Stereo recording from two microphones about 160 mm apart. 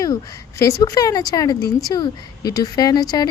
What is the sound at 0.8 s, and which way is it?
Speech, 25° left (ahead or behind).